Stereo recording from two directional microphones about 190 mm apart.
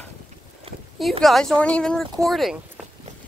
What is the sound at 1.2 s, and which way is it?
Speech, centre (ahead or behind).